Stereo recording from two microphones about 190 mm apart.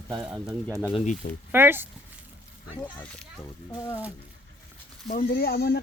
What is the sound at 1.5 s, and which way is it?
Speech, 10° right (ahead or behind).